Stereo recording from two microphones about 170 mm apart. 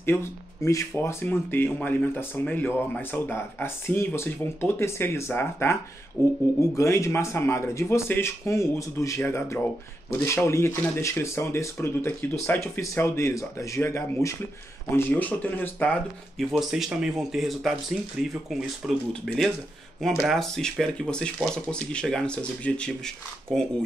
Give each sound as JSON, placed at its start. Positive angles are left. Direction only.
{"t": 0.0, "sound": "speech", "side_deg": 15}